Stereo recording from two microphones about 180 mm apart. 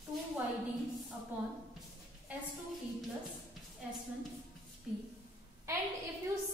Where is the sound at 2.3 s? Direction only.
10° right (ahead or behind).